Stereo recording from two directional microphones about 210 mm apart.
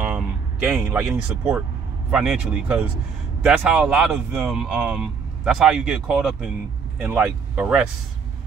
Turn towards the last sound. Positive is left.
turn(degrees=-5)  # may be behind; listen again after turning